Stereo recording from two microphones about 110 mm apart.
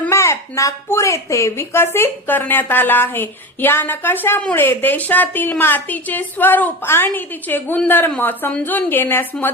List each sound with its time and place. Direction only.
0.1 s a woman's voice: 25° left (ahead or behind)